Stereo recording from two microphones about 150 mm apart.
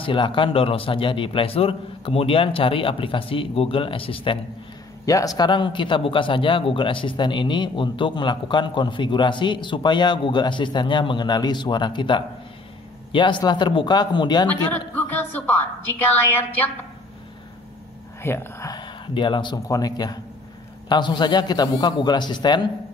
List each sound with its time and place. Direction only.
0.0 s a man's voice: 35° left (ahead or behind)
5.0 s a man's voice: 25° left (ahead or behind)
14.7 s a woman's voice: 10° left (ahead or behind)
18.2 s speech: 15° left (ahead or behind)
18.8 s a man's voice: 30° left (ahead or behind)